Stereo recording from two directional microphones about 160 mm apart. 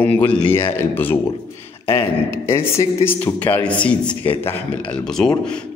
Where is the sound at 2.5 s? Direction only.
15° left (ahead or behind).